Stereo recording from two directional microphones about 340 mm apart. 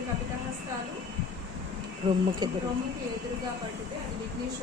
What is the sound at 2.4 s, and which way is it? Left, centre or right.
Speech, centre.